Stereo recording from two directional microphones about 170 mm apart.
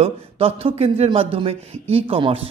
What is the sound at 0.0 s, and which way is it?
A man's voice, 35° right (ahead or behind).